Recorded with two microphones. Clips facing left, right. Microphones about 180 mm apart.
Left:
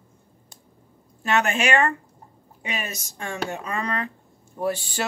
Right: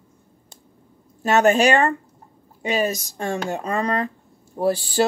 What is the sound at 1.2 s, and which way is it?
Speech, 40° right (ahead or behind).